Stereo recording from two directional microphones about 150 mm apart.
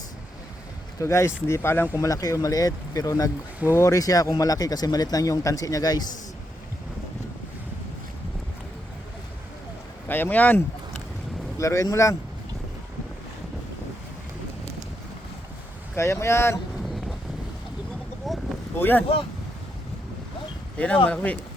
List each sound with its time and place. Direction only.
0.9 s speech: 20° left (ahead or behind)
10.1 s speech: 15° left (ahead or behind)
16.0 s speech: 20° left (ahead or behind)
18.3 s a sound: centre (ahead or behind)
18.8 s speech: 15° left (ahead or behind)
20.7 s speech: 10° left (ahead or behind)